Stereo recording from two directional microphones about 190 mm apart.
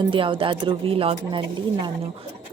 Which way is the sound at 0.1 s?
25° right (ahead or behind).